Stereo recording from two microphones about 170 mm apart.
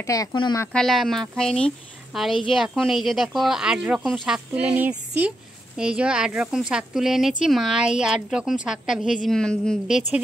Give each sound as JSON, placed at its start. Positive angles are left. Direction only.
{"t": 0.0, "sound": "speech", "side_deg": 20}
{"t": 0.7, "sound": "speech", "side_deg": 0}